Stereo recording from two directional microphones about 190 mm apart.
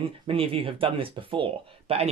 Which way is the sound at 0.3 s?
30° right (ahead or behind).